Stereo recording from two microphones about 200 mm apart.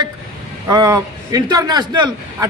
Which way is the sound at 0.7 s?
15° right (ahead or behind).